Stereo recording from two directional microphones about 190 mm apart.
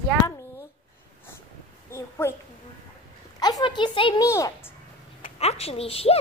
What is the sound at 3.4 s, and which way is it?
A woman's voice, 20° left (ahead or behind).